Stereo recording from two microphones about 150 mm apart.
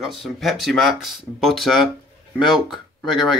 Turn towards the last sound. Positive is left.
turn(degrees=0)  # may be behind; listen again after turning